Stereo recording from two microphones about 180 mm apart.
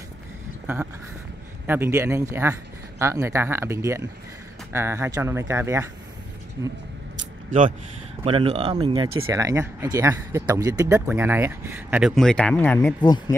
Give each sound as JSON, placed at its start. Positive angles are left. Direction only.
{"t": 1.7, "sound": "speech", "side_deg": -15}
{"t": 8.2, "sound": "speech", "side_deg": -30}
{"t": 12.2, "sound": "speech", "side_deg": 5}